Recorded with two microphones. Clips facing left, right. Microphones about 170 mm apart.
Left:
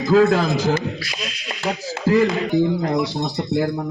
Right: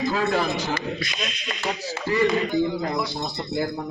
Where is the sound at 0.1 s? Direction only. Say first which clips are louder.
Left 12 dB; 90° left.